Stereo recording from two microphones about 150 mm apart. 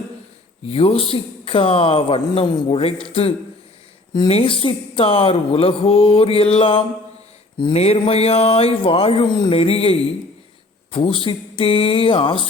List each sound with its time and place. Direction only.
0.7 s speech: 40° left (ahead or behind)